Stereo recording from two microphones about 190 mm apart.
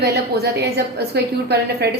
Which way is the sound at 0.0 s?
60° right (ahead or behind).